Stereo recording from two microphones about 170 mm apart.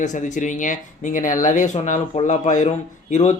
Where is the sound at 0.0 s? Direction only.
45° left (ahead or behind).